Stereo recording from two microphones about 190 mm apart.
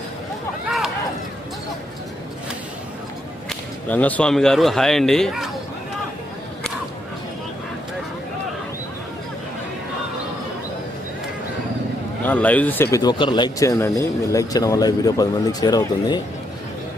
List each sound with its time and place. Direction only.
3.5 s speech: 10° left (ahead or behind)
12.2 s speech: 10° left (ahead or behind)